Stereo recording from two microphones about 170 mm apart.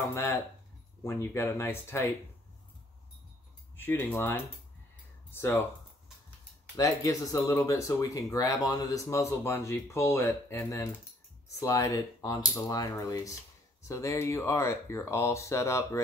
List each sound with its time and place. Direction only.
0.1 s speech: 15° left (ahead or behind)
3.7 s speech: 10° left (ahead or behind)
6.8 s speech: 20° left (ahead or behind)